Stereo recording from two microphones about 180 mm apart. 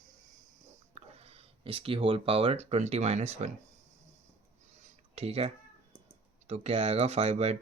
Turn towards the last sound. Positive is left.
turn(degrees=-35)  # may be behind; listen again after turning